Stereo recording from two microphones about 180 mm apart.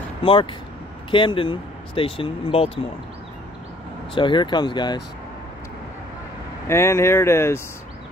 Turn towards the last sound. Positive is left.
turn(degrees=15)  # may be behind; listen again after turning